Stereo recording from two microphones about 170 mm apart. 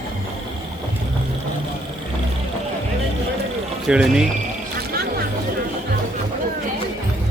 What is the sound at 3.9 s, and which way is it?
Speech, 5° right (ahead or behind).